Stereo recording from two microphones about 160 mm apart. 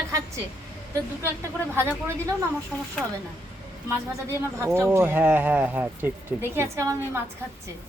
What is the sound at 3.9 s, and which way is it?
Speech, 15° right (ahead or behind).